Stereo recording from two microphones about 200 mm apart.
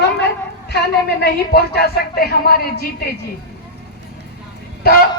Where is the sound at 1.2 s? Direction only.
50° left (ahead or behind).